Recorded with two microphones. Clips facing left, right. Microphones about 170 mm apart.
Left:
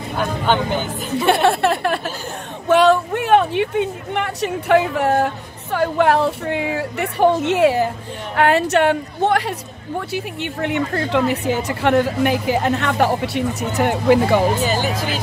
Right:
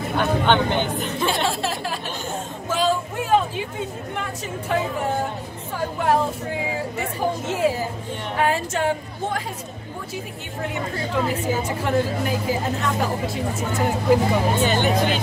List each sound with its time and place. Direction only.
0.2 s speech: 5° left (ahead or behind)
1.1 s speech: 65° left (ahead or behind)